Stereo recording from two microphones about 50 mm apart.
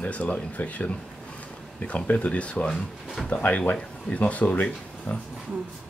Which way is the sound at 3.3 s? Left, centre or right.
Left.